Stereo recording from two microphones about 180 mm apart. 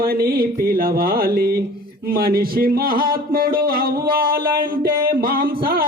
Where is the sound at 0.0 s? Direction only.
55° right (ahead or behind).